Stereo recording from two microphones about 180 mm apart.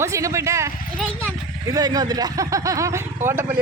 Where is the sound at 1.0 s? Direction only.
5° left (ahead or behind).